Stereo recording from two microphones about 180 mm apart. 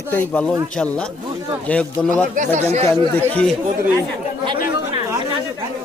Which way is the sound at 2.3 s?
40° right (ahead or behind).